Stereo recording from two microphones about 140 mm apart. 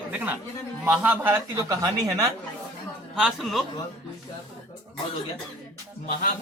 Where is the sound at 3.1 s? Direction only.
Centre (ahead or behind).